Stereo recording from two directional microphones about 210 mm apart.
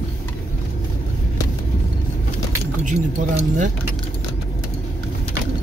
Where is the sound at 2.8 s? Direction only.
35° right (ahead or behind).